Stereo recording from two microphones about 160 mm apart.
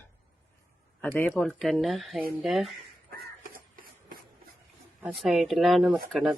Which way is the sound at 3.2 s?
60° right (ahead or behind).